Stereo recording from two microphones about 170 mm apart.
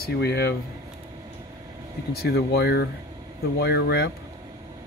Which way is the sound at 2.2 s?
75° left (ahead or behind).